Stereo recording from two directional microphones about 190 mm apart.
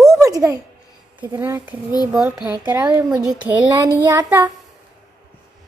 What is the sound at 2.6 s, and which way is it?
Speech, 20° right (ahead or behind).